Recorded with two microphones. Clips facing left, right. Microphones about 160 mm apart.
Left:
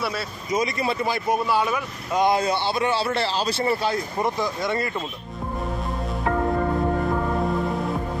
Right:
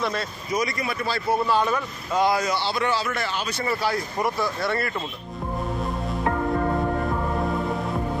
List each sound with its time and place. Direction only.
0.5 s speech: 25° left (ahead or behind)
2.2 s speech: 25° left (ahead or behind)